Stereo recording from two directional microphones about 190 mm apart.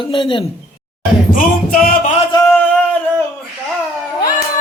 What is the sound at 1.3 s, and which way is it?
Music, 45° left (ahead or behind).